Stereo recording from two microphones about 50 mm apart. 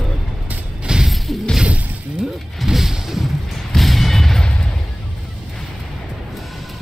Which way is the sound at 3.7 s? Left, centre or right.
Centre.